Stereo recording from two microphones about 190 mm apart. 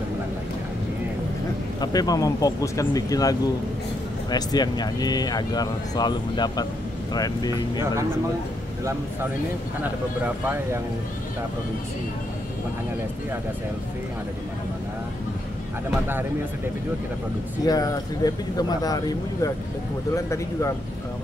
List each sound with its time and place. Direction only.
1.8 s speech: 20° left (ahead or behind)
17.6 s speech: 20° left (ahead or behind)